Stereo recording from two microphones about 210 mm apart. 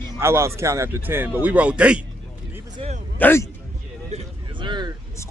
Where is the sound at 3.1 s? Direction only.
10° left (ahead or behind).